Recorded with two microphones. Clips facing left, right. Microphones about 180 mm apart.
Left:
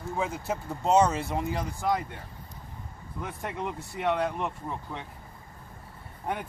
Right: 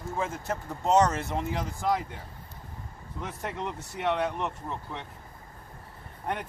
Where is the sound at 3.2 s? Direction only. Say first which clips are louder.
Even; 5° left (ahead or behind).